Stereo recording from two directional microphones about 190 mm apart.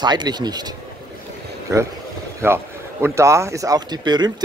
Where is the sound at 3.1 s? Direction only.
15° right (ahead or behind).